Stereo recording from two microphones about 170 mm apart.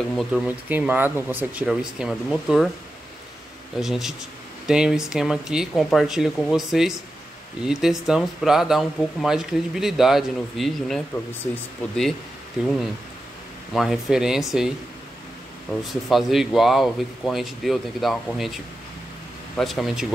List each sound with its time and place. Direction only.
0.1 s speech: centre (ahead or behind)
0.5 s speech: 10° right (ahead or behind)
3.8 s speech: centre (ahead or behind)
12.6 s speech: 5° right (ahead or behind)
13.7 s speech: centre (ahead or behind)
15.8 s speech: centre (ahead or behind)
19.5 s speech: centre (ahead or behind)